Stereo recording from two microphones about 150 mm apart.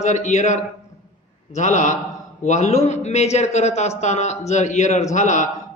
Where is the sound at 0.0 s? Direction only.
50° left (ahead or behind).